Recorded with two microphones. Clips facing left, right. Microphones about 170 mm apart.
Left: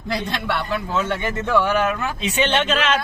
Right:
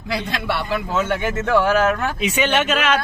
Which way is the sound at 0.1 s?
5° right (ahead or behind).